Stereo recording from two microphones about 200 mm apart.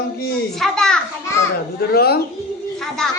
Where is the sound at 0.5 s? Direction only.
Centre (ahead or behind).